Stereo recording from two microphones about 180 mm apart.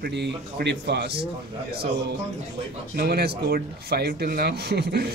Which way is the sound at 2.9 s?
60° right (ahead or behind).